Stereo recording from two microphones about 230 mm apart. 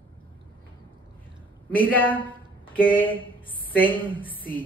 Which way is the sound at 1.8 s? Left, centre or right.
Centre.